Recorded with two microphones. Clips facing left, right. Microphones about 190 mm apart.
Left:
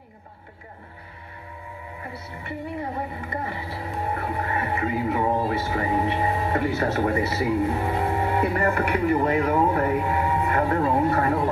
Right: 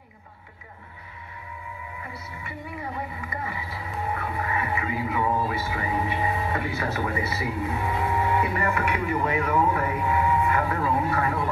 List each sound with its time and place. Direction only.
2.4 s speech: 30° left (ahead or behind)
8.8 s speech: 50° left (ahead or behind)
9.1 s speech: 40° left (ahead or behind)
9.8 s speech: 45° left (ahead or behind)